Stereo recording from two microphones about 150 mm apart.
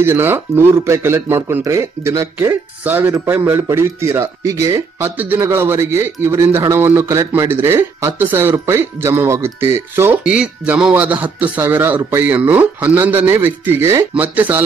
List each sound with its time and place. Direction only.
0.0 s speech: 15° right (ahead or behind)